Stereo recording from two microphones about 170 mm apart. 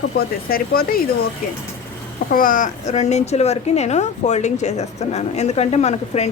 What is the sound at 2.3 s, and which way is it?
A woman's voice, 55° left (ahead or behind).